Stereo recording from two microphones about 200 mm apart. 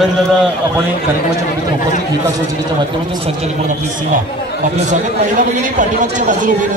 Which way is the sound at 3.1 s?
30° right (ahead or behind).